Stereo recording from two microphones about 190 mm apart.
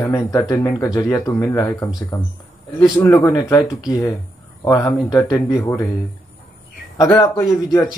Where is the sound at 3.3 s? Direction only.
20° left (ahead or behind).